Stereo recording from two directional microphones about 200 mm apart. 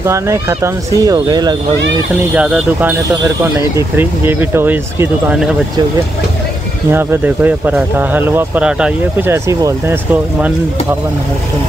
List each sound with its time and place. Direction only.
0.0 s speech: 15° right (ahead or behind)
2.3 s speech: 5° right (ahead or behind)
6.9 s speech: 10° right (ahead or behind)